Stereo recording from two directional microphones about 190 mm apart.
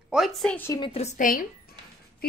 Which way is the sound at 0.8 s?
30° left (ahead or behind).